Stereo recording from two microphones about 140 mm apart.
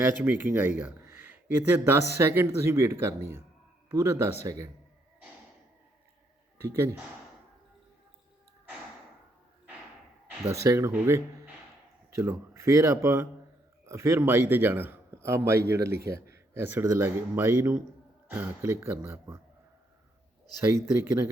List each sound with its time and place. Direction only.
0.0 s a man's voice: 15° right (ahead or behind)
6.6 s a man's voice: 15° right (ahead or behind)
10.5 s a man's voice: 20° right (ahead or behind)
20.6 s speech: 20° right (ahead or behind)